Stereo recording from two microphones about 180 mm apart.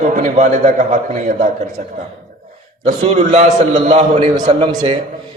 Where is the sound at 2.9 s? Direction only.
40° right (ahead or behind).